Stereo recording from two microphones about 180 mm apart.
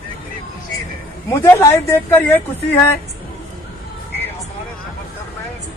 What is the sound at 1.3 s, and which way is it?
Speech, 15° left (ahead or behind).